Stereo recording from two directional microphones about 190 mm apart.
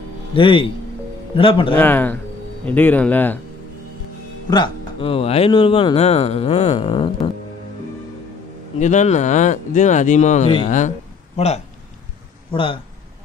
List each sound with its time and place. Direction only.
0.3 s speech: 25° left (ahead or behind)
1.8 s a man's voice: 10° left (ahead or behind)
4.5 s speech: 25° left (ahead or behind)
8.7 s speech: 40° left (ahead or behind)